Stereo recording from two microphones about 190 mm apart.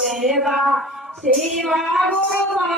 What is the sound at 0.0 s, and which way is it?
Speech, centre (ahead or behind).